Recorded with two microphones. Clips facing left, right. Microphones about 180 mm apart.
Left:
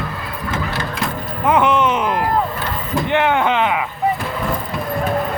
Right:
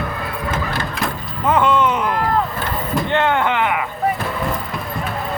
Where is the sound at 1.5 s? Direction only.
15° left (ahead or behind).